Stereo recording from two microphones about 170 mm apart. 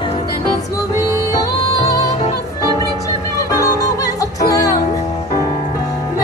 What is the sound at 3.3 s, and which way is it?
Music, 20° left (ahead or behind).